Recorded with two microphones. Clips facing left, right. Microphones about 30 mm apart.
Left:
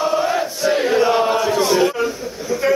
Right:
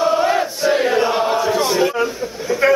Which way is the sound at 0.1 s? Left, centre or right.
Centre.